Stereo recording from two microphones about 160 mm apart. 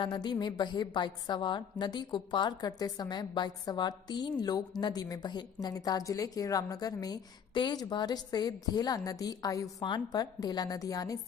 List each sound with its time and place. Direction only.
0.0 s a woman's voice: 25° left (ahead or behind)